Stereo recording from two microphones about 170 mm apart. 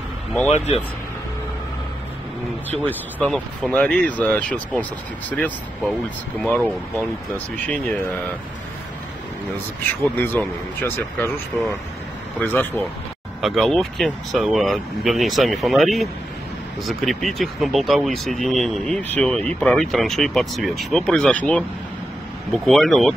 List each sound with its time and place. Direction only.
0.5 s speech: 40° left (ahead or behind)
2.7 s speech: 10° left (ahead or behind)
6.4 s speech: 10° left (ahead or behind)
10.1 s speech: 10° left (ahead or behind)
12.4 s speech: 10° left (ahead or behind)
13.4 s speech: centre (ahead or behind)